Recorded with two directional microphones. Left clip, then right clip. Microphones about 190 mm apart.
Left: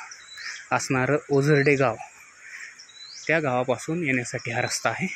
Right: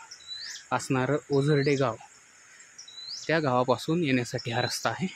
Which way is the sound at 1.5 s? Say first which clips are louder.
Left 5 dB; 5° left (ahead or behind).